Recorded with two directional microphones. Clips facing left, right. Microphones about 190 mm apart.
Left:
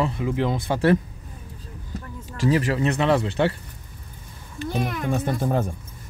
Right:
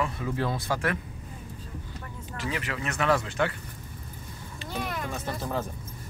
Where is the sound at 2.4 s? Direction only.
35° left (ahead or behind).